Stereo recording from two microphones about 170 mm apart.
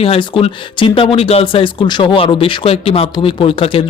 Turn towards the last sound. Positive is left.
turn(degrees=35)  # may be behind; listen again after turning